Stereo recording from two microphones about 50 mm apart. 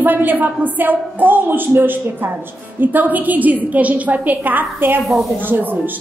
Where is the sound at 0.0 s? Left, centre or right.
Right.